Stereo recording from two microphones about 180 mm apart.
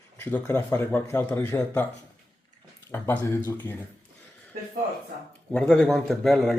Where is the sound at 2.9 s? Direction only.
10° left (ahead or behind).